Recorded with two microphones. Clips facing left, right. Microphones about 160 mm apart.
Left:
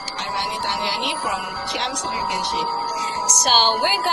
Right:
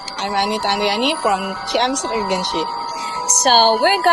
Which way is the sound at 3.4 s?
55° right (ahead or behind).